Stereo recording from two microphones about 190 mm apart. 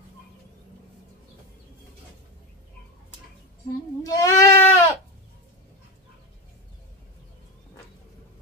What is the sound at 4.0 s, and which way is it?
Sheep, 15° left (ahead or behind).